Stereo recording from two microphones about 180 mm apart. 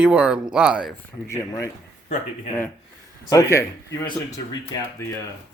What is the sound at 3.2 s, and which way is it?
Speech, 15° left (ahead or behind).